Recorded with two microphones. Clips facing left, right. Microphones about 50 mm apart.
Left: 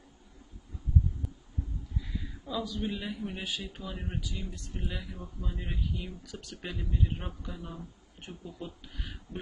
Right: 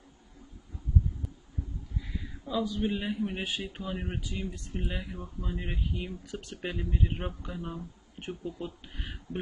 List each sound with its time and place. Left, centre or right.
2.0 s a sound: centre
2.8 s speech: right
5.1 s speech: centre